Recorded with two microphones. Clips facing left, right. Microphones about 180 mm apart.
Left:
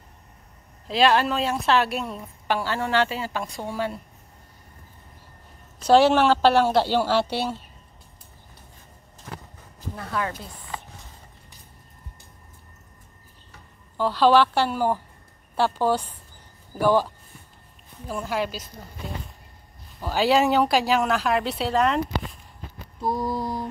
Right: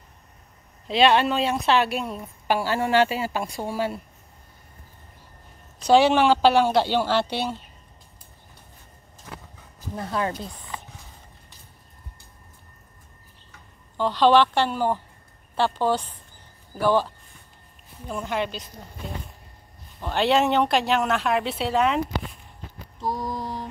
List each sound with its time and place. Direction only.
0.8 s a woman's voice: centre (ahead or behind)
5.8 s a woman's voice: 5° left (ahead or behind)
9.9 s speech: 30° right (ahead or behind)
13.9 s a woman's voice: 5° left (ahead or behind)